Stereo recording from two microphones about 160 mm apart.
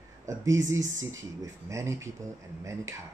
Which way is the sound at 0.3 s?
20° right (ahead or behind).